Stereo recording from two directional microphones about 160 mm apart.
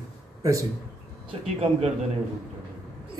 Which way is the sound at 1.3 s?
40° right (ahead or behind).